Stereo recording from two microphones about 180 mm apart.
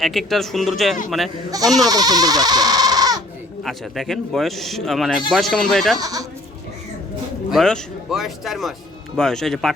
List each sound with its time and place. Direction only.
0.0 s speech: centre (ahead or behind)
1.7 s speech: 20° right (ahead or behind)
3.6 s speech: centre (ahead or behind)
6.0 s speech: 20° right (ahead or behind)
7.5 s speech: centre (ahead or behind)